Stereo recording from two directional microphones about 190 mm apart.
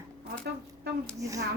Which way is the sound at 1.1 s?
15° right (ahead or behind).